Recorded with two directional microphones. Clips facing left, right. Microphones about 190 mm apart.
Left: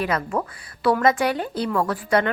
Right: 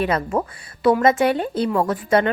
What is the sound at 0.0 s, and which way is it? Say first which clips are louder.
A woman's voice: right 3 dB; 25° right (ahead or behind).